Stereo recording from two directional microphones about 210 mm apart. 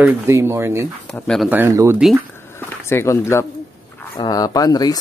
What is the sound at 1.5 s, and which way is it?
Speech, 10° right (ahead or behind).